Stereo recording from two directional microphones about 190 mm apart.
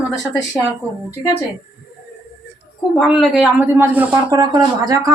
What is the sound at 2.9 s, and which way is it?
Speech, centre (ahead or behind).